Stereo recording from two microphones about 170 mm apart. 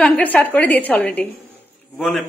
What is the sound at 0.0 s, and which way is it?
A woman's voice, 10° left (ahead or behind).